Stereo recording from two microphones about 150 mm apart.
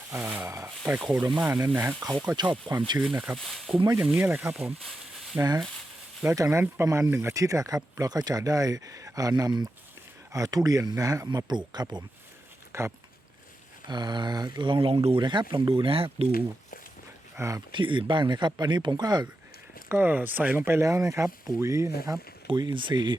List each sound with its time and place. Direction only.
0.1 s speech: 10° right (ahead or behind)
2.2 s speech: 30° right (ahead or behind)
3.0 s speech: 10° right (ahead or behind)
3.3 s speech: centre (ahead or behind)
3.9 s speech: 15° right (ahead or behind); by 12.0 s 30° right (ahead or behind)
12.7 s speech: 20° right (ahead or behind)
13.8 s speech: 30° right (ahead or behind)
17.3 s speech: 20° right (ahead or behind)
17.7 s speech: 35° right (ahead or behind)
19.9 s speech: 10° right (ahead or behind)
22.4 s speech: 30° right (ahead or behind)